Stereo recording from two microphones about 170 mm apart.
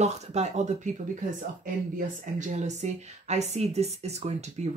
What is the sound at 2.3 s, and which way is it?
Speech, 45° right (ahead or behind).